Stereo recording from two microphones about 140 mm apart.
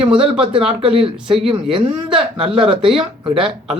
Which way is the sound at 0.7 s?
45° right (ahead or behind).